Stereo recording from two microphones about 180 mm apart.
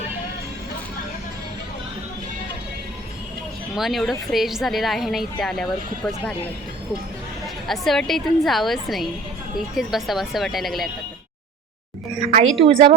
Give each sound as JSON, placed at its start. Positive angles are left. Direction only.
{"t": 3.8, "sound": "a woman's voice", "side_deg": 0}
{"t": 7.7, "sound": "a woman's voice", "side_deg": 0}
{"t": 12.4, "sound": "a woman's voice", "side_deg": -30}